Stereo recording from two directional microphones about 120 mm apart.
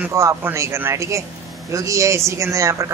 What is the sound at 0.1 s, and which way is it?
Speech, 25° right (ahead or behind).